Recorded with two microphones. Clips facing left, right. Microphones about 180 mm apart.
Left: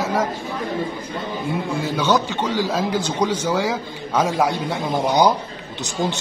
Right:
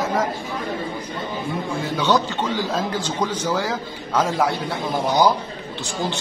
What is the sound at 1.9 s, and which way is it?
Speech, 10° left (ahead or behind).